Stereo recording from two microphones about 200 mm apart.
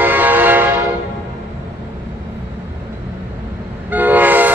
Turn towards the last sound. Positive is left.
turn(degrees=-10)  # may be behind; listen again after turning